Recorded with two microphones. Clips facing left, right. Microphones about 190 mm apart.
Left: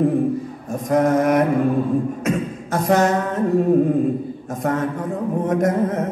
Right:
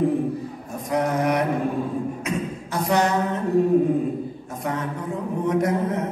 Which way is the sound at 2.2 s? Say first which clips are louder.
Left 5 dB; 45° left (ahead or behind).